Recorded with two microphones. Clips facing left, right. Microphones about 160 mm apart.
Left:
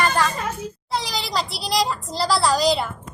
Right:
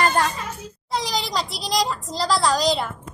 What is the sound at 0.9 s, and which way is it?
A child's voice, 5° left (ahead or behind).